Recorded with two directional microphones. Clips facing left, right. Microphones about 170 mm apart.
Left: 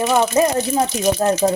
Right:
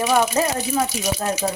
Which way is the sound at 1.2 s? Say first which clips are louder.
Left 7 dB; 35° left (ahead or behind).